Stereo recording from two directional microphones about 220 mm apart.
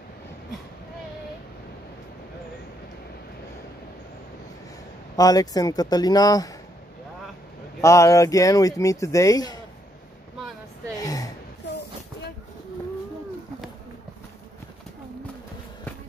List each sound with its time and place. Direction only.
5.1 s speech: 15° left (ahead or behind)
7.8 s speech: 15° left (ahead or behind)
11.0 s gasp: 15° left (ahead or behind)